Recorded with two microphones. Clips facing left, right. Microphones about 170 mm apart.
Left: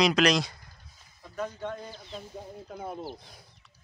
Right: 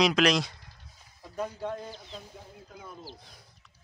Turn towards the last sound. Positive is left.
turn(degrees=50)  # may be behind; listen again after turning